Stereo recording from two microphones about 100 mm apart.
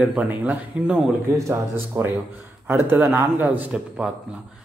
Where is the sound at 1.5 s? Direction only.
25° right (ahead or behind).